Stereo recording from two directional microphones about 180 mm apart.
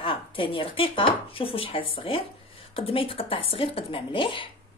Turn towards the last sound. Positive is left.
turn(degrees=30)  # may be behind; listen again after turning